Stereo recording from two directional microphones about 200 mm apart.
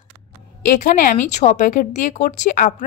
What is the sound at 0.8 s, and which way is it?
Speech, 40° left (ahead or behind).